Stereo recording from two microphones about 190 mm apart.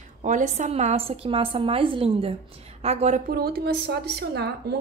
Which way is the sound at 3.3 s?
55° right (ahead or behind).